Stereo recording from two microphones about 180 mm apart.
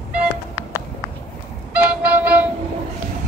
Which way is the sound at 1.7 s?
10° right (ahead or behind).